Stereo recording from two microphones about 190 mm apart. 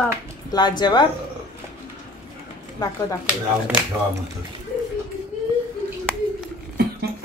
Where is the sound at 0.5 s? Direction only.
20° left (ahead or behind).